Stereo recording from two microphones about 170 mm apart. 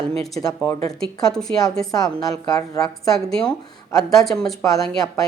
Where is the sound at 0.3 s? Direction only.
15° left (ahead or behind).